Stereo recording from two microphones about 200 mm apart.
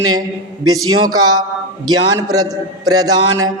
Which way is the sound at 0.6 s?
20° right (ahead or behind).